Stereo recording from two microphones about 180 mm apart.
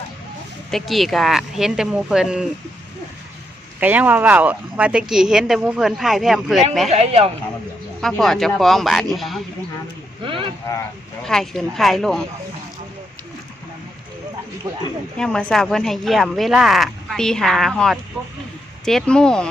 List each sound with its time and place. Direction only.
0.7 s speech: centre (ahead or behind)
3.8 s speech: 10° right (ahead or behind)
6.9 s speech: 35° right (ahead or behind)
8.2 s speech: centre (ahead or behind)
10.2 s speech: 30° right (ahead or behind)
11.3 s speech: centre (ahead or behind)
15.2 s speech: 5° left (ahead or behind)